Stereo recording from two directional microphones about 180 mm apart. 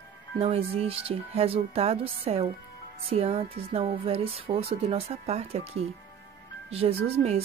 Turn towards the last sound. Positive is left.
turn(degrees=-35)  # may be behind; listen again after turning